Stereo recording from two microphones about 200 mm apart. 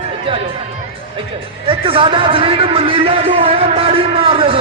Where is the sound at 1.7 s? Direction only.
25° right (ahead or behind).